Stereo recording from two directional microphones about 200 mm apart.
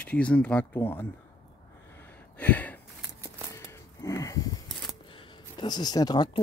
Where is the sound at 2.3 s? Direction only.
10° left (ahead or behind).